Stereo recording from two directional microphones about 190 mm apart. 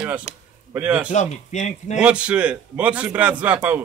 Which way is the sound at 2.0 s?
5° right (ahead or behind).